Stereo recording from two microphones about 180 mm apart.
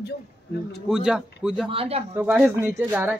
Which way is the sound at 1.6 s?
35° right (ahead or behind).